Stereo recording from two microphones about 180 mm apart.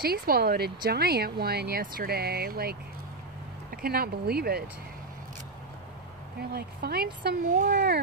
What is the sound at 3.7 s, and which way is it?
Speech, 60° right (ahead or behind).